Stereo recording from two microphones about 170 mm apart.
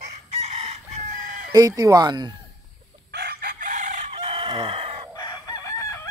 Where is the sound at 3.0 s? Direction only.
70° right (ahead or behind); by 4.2 s 45° right (ahead or behind).